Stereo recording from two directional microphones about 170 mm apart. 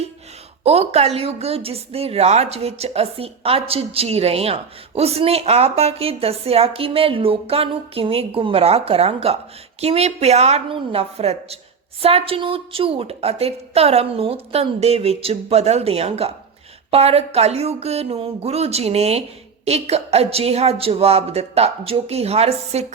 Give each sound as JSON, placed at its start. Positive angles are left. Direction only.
{"t": 0.6, "sound": "speech", "side_deg": -40}